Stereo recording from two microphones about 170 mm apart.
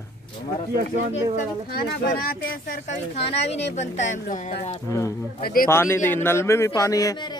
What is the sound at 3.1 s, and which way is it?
Speech, 40° left (ahead or behind).